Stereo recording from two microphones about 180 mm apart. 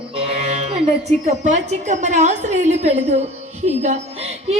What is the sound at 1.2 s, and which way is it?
A woman's voice, 40° right (ahead or behind).